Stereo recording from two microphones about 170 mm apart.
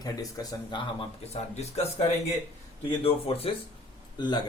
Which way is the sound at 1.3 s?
40° left (ahead or behind).